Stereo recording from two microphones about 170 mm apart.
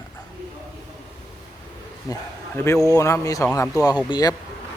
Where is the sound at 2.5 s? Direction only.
15° left (ahead or behind).